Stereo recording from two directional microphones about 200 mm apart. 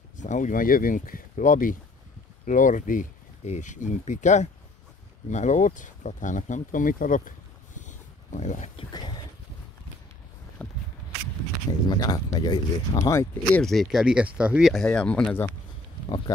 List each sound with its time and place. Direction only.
0.2 s speech: 40° left (ahead or behind)
8.9 s a sound: 20° left (ahead or behind)
10.6 s walk: 5° left (ahead or behind)
11.9 s speech: 20° left (ahead or behind)